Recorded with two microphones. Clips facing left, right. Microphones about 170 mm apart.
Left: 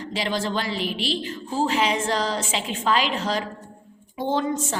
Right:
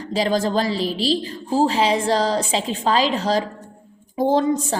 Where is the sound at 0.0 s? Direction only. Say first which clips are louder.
Right 6 dB; 40° right (ahead or behind).